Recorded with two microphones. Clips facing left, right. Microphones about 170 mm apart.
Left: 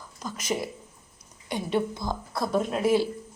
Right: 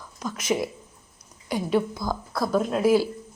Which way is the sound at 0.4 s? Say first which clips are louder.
Right 4 dB; 10° right (ahead or behind).